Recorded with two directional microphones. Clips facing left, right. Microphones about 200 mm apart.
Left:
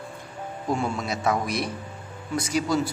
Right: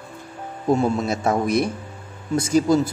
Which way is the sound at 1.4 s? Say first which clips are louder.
Right 8 dB; 50° right (ahead or behind).